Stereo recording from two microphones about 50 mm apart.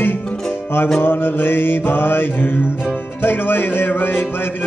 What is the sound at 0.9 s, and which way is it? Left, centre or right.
Speech, left.